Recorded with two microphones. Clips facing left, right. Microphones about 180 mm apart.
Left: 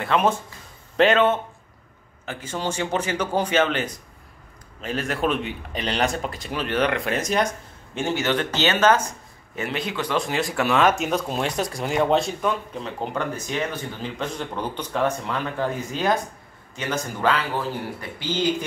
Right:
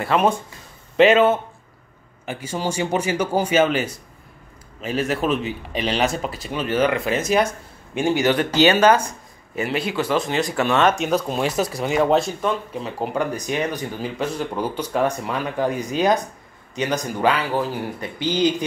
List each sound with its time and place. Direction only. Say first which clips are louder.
0.0 s speech: right 2 dB; 5° right (ahead or behind)